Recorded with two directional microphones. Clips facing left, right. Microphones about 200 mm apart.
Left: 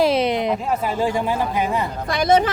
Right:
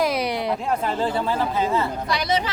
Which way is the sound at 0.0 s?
25° left (ahead or behind).